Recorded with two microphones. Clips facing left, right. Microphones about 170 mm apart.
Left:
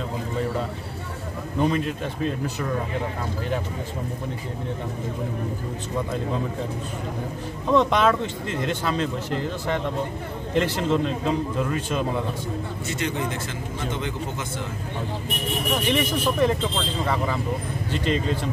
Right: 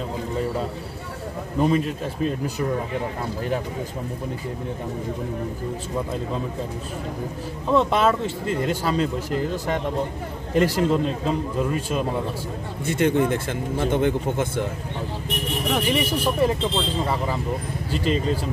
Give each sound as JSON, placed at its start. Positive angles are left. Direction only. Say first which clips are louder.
{"t": 1.6, "sound": "speech", "louder": "right 2 dB", "side_deg": -5}
{"t": 7.7, "sound": "speech", "louder": "even", "side_deg": -5}
{"t": 10.5, "sound": "a man's voice", "louder": "right 3 dB", "side_deg": -10}
{"t": 12.8, "sound": "speech", "louder": "right 9 dB", "side_deg": -55}
{"t": 15.9, "sound": "a man's voice", "louder": "even", "side_deg": -5}
{"t": 17.9, "sound": "speech", "louder": "right 2 dB", "side_deg": -5}